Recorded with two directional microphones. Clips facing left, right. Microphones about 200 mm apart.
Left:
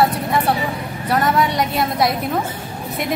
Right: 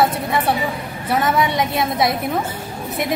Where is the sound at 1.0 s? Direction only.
Centre (ahead or behind).